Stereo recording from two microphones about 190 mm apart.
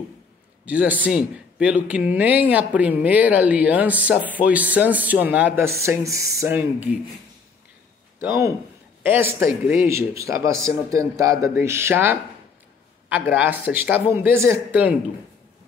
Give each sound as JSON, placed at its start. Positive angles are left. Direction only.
{"t": 0.7, "sound": "speech", "side_deg": -5}
{"t": 8.2, "sound": "speech", "side_deg": -15}
{"t": 13.3, "sound": "speech", "side_deg": -10}